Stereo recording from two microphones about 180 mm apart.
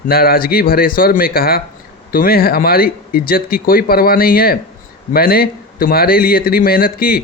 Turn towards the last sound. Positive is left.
turn(degrees=55)  # may be behind; listen again after turning